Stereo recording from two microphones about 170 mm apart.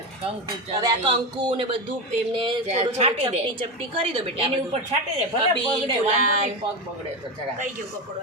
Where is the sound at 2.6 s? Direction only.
40° right (ahead or behind).